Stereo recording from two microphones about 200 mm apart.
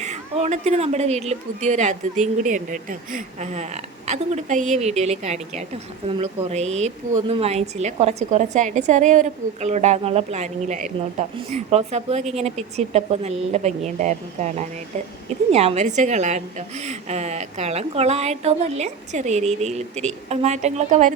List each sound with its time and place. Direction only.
0.0 s a woman's voice: 35° right (ahead or behind)